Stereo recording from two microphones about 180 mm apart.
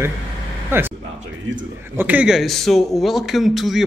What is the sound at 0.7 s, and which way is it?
Speech, 10° right (ahead or behind).